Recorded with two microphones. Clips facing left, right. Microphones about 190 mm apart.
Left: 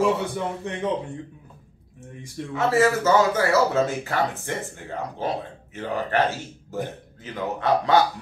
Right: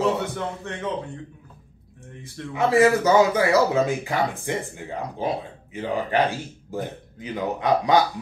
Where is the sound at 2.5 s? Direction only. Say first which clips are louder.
Right 2 dB; 15° right (ahead or behind).